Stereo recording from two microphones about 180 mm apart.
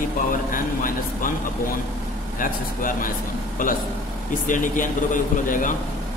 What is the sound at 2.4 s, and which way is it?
Speech, 50° left (ahead or behind).